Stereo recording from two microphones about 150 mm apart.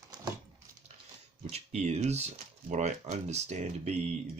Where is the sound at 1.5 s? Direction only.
45° right (ahead or behind).